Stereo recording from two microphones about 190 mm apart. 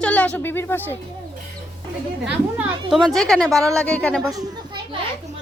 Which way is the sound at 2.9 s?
Centre (ahead or behind).